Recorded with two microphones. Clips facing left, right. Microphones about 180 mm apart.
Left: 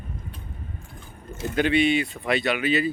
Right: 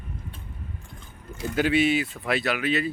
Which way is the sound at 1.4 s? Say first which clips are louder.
Left 1 dB; 5° right (ahead or behind).